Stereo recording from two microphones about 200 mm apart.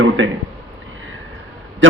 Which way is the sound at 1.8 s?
70° right (ahead or behind).